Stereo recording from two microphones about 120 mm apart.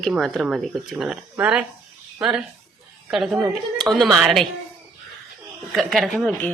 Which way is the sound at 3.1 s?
5° right (ahead or behind).